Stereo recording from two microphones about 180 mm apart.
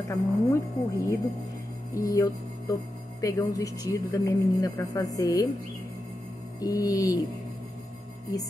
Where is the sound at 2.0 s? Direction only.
15° left (ahead or behind).